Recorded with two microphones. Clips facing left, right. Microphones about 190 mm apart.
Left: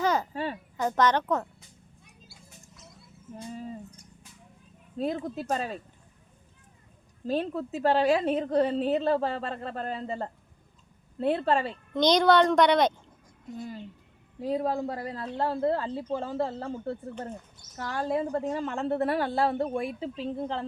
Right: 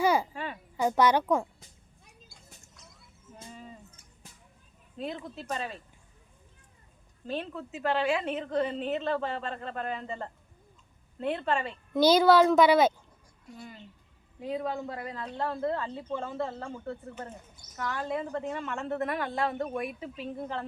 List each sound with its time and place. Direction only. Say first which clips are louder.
0.0 s a sound: right 1 dB; 10° right (ahead or behind)
0.3 s a woman's voice: left 5 dB; 35° left (ahead or behind)
0.8 s a woman's voice: right 1 dB; 10° right (ahead or behind)
2.2 s a sound: left 4 dB; 5° left (ahead or behind)
4.9 s a woman's voice: left 7 dB; 40° left (ahead or behind)
7.3 s a woman's voice: left 6 dB; 40° left (ahead or behind)
11.9 s a child's voice: right 1 dB; 5° right (ahead or behind)
14.4 s a woman's voice: left 5 dB; 40° left (ahead or behind)